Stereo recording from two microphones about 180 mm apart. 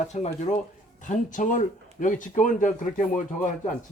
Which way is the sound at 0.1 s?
40° left (ahead or behind).